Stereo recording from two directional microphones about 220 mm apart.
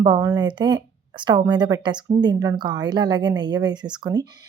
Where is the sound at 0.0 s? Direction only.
20° right (ahead or behind).